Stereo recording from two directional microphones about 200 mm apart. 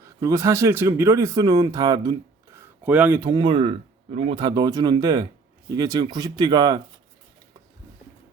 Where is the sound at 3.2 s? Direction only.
20° right (ahead or behind).